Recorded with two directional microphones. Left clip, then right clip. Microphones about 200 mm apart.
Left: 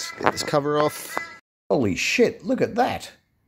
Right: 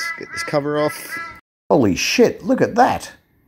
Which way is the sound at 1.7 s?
5° right (ahead or behind).